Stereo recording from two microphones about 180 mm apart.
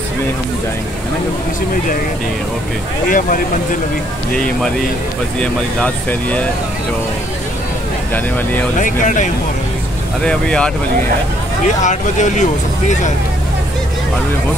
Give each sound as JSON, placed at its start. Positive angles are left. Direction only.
{"t": 3.1, "sound": "speech", "side_deg": 50}
{"t": 5.4, "sound": "speech", "side_deg": 5}
{"t": 8.7, "sound": "speech", "side_deg": 45}
{"t": 10.2, "sound": "speech", "side_deg": 5}
{"t": 11.6, "sound": "speech", "side_deg": 40}